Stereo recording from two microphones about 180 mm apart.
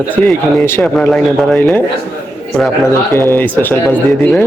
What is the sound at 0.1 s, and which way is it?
A man's voice, 10° left (ahead or behind).